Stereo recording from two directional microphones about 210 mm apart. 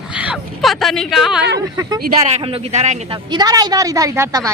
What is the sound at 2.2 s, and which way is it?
Speech, 30° right (ahead or behind).